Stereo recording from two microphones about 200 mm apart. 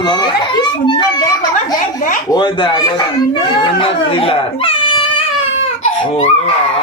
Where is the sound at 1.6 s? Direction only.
40° left (ahead or behind).